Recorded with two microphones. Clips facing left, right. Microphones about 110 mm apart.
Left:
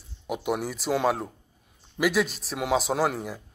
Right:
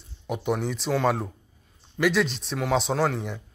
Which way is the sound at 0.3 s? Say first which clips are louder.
Right 1 dB; 5° left (ahead or behind).